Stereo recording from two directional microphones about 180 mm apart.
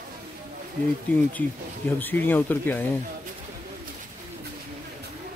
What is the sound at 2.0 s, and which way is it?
Speech, 10° left (ahead or behind).